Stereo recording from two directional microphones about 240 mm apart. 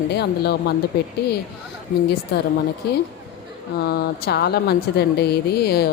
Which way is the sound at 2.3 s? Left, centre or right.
Left.